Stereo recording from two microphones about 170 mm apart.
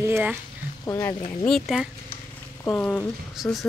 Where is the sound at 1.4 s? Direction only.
Centre (ahead or behind).